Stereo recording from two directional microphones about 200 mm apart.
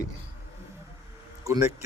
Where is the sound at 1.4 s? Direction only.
15° right (ahead or behind).